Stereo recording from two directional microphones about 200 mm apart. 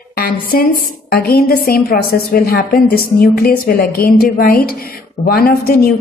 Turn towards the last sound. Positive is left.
turn(degrees=50)  # may be behind; listen again after turning